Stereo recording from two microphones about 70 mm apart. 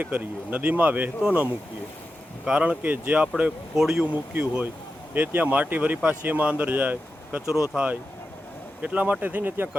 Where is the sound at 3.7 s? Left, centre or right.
Centre.